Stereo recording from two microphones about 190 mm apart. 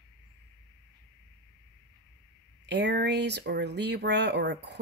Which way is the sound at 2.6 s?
60° right (ahead or behind).